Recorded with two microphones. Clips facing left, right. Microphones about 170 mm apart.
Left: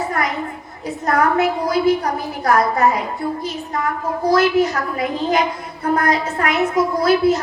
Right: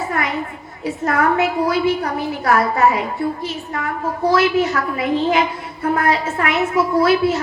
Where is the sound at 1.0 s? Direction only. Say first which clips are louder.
Left 1 dB; 35° left (ahead or behind).